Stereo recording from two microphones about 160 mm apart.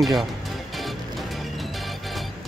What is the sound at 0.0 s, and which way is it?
Speech, centre (ahead or behind).